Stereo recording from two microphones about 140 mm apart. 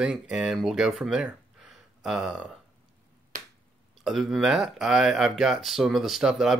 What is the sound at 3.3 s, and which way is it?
Finger snapping, 65° right (ahead or behind).